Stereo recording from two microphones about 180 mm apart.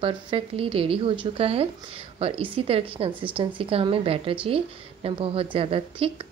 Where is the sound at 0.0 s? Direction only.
30° right (ahead or behind).